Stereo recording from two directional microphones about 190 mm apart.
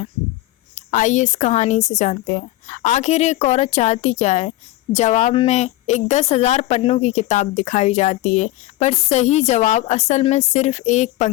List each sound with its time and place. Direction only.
0.8 s speech: 40° left (ahead or behind)